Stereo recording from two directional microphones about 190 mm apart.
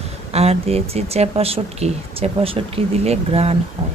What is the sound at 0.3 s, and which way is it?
Speech, 30° right (ahead or behind).